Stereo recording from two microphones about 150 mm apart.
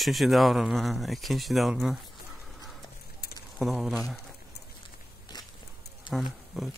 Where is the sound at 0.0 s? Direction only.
Centre (ahead or behind).